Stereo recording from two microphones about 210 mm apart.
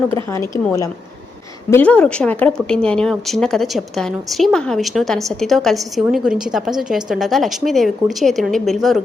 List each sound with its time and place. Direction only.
1.7 s a woman's voice: 5° left (ahead or behind)